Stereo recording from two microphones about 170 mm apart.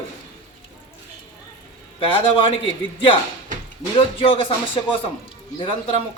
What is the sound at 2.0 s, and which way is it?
Speech, 30° left (ahead or behind).